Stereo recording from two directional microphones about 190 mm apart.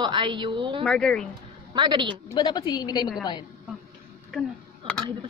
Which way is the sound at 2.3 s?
20° left (ahead or behind).